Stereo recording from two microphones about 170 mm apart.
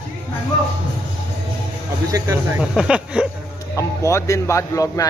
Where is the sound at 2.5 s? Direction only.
5° right (ahead or behind).